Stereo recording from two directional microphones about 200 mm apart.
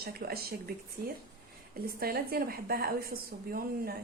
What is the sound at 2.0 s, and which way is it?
A woman's voice, 50° right (ahead or behind).